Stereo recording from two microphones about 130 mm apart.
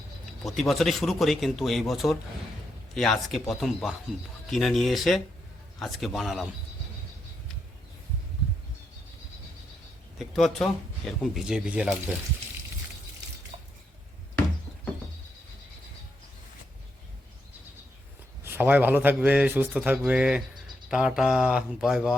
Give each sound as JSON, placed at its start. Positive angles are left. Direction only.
{"t": 0.4, "sound": "speech", "side_deg": 0}
{"t": 10.2, "sound": "speech", "side_deg": 0}
{"t": 13.5, "sound": "a sound", "side_deg": -50}
{"t": 18.4, "sound": "a man's voice", "side_deg": -15}